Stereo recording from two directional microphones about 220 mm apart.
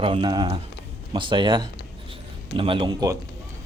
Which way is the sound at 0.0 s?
20° right (ahead or behind).